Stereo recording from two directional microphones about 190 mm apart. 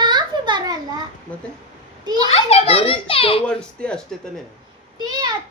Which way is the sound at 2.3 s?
30° left (ahead or behind).